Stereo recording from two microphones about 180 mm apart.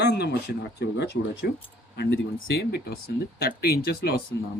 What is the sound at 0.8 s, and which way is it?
Speech, 70° left (ahead or behind).